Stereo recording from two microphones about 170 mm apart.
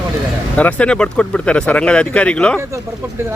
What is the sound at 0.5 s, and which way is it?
Speech, 10° left (ahead or behind).